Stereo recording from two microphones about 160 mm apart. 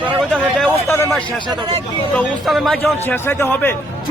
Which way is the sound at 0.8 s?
15° left (ahead or behind).